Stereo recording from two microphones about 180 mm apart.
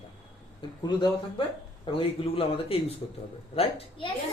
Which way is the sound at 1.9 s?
30° left (ahead or behind).